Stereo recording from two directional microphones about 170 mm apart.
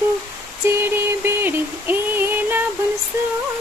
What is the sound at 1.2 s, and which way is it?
Female singing, 10° right (ahead or behind).